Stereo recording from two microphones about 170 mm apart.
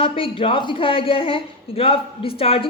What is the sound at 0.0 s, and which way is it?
A woman's voice, 30° left (ahead or behind).